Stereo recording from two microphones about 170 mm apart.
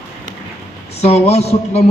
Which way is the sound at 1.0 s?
40° left (ahead or behind).